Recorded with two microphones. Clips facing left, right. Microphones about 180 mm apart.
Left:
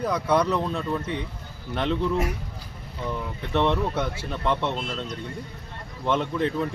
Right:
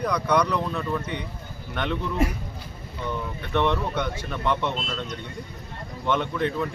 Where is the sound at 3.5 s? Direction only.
30° left (ahead or behind).